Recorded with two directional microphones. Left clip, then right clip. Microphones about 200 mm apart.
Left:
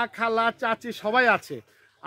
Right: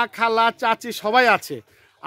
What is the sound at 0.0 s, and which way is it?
Speech, 45° right (ahead or behind).